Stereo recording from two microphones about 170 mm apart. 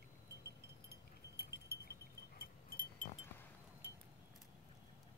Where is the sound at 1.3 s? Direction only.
70° left (ahead or behind).